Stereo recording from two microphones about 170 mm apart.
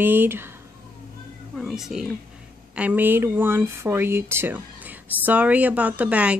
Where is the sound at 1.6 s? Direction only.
5° right (ahead or behind).